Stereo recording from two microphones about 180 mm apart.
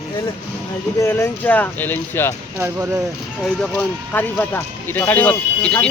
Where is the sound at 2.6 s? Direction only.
15° right (ahead or behind).